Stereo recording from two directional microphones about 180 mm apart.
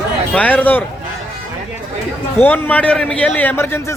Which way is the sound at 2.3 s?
10° left (ahead or behind).